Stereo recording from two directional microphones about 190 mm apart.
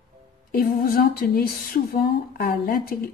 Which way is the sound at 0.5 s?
50° left (ahead or behind).